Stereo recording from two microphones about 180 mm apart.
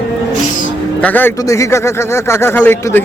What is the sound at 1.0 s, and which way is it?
A man's voice, 10° left (ahead or behind).